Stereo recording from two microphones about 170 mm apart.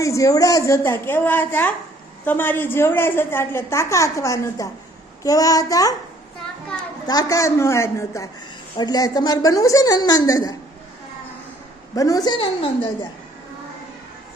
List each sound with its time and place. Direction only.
0.0 s a woman's voice: 20° left (ahead or behind)
7.1 s a woman's voice: 20° left (ahead or behind)
11.9 s a woman's voice: 20° left (ahead or behind)